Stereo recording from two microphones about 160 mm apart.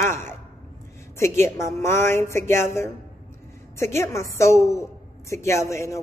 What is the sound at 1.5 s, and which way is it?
A woman's voice, 15° left (ahead or behind).